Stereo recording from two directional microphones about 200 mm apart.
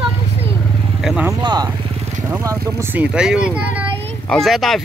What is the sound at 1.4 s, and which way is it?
Speech, 20° right (ahead or behind).